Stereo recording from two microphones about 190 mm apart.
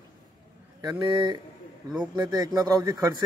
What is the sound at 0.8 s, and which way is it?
Speech, 25° right (ahead or behind).